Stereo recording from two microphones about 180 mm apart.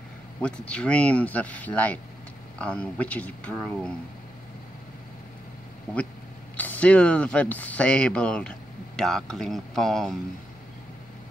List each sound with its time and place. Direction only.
0.4 s speech: 5° left (ahead or behind)
6.5 s speech: 10° left (ahead or behind)